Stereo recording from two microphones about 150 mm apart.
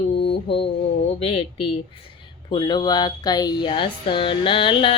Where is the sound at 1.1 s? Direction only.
40° left (ahead or behind).